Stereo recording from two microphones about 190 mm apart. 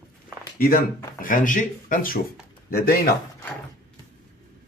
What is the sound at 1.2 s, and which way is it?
Speech, 45° left (ahead or behind).